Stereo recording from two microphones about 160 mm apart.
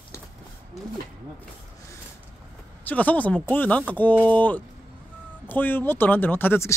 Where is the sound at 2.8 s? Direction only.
10° left (ahead or behind).